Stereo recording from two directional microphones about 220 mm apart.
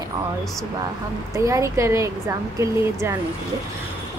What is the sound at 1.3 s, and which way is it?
A woman's voice, 15° right (ahead or behind).